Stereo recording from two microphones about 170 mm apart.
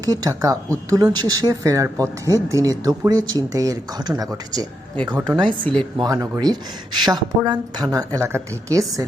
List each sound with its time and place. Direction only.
0.0 s speech: 20° right (ahead or behind)
5.5 s speech: 5° left (ahead or behind)
6.0 s speech: 20° right (ahead or behind)